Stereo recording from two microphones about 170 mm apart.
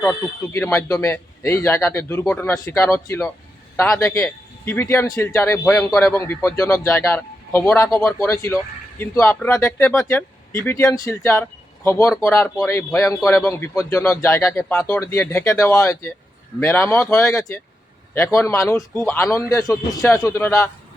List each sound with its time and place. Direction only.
0.2 s speech: 15° left (ahead or behind)